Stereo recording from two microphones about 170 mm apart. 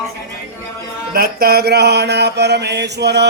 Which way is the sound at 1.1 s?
65° right (ahead or behind).